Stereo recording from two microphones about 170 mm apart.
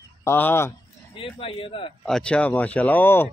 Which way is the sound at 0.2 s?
10° left (ahead or behind).